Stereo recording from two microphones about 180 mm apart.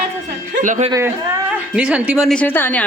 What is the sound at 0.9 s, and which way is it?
Speech, 15° right (ahead or behind).